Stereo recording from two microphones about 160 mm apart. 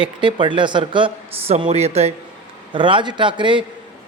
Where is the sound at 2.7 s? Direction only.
30° right (ahead or behind).